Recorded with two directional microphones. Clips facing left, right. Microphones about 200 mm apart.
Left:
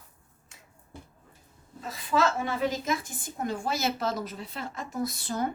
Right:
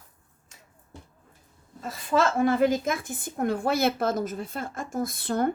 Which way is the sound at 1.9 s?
50° right (ahead or behind).